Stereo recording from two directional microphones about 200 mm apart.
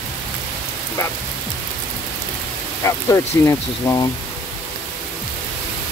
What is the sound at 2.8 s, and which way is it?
Speech, 15° left (ahead or behind).